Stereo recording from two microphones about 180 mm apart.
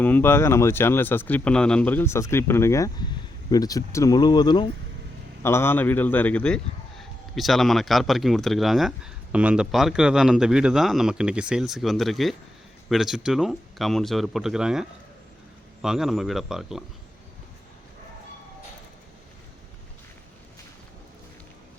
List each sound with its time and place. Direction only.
0.0 s speech: 10° left (ahead or behind)
5.4 s speech: 15° left (ahead or behind); by 16.8 s centre (ahead or behind)